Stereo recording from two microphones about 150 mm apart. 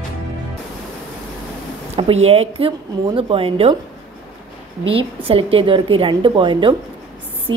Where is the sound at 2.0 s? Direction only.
40° right (ahead or behind).